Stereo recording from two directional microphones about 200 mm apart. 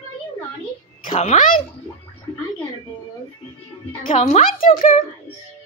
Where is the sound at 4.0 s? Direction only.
40° left (ahead or behind).